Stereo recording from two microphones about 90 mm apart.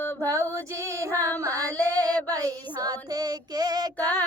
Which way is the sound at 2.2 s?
45° right (ahead or behind).